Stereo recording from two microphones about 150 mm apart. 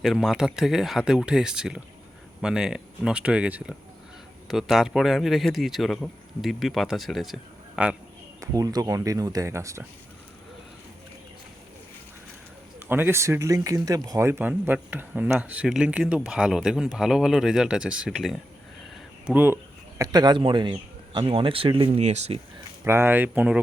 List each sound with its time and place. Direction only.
0.0 s a man's voice: centre (ahead or behind)
8.4 s speech: 25° right (ahead or behind)
12.9 s speech: 15° right (ahead or behind)
20.0 s a man's voice: 25° right (ahead or behind); by 22.4 s 45° right (ahead or behind)
22.8 s speech: 15° right (ahead or behind)